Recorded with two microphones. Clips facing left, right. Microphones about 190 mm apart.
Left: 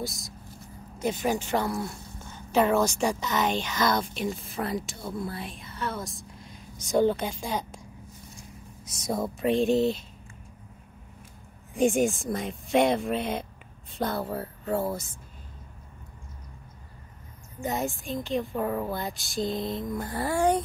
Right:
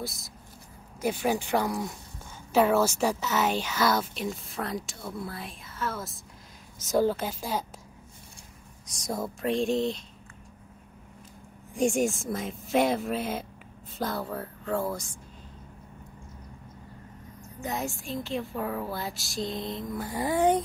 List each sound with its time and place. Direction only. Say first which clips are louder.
0.0 s speech: left 2 dB; centre (ahead or behind)
8.8 s speech: left 3 dB; centre (ahead or behind)
11.7 s speech: left 2 dB; centre (ahead or behind)
17.6 s speech: left 3 dB; centre (ahead or behind)
20.1 s speech: right 1 dB; 15° right (ahead or behind)